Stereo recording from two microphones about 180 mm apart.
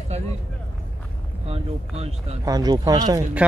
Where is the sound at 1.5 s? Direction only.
35° right (ahead or behind).